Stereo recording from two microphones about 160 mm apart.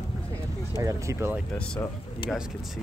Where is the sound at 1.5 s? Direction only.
5° left (ahead or behind).